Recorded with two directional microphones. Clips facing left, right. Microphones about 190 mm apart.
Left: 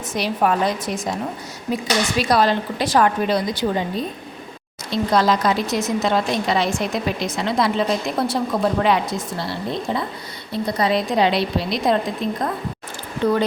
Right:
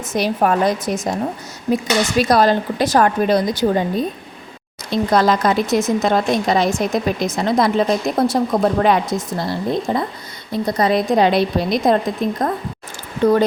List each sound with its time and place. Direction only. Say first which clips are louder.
0.1 s speech: right 3 dB; 45° right (ahead or behind)
2.1 s speech: right 4 dB; 45° right (ahead or behind)